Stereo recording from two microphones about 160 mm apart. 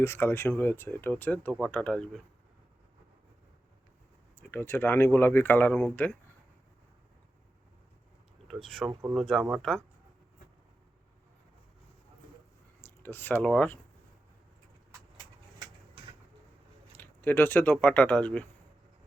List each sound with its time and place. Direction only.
0.0 s speech: 15° left (ahead or behind)
4.4 s speech: 10° left (ahead or behind)
8.4 s speech: centre (ahead or behind)
8.9 s speech: 20° right (ahead or behind)
9.1 s speech: centre (ahead or behind)
12.8 s speech: 15° left (ahead or behind)
16.9 s speech: 10° left (ahead or behind)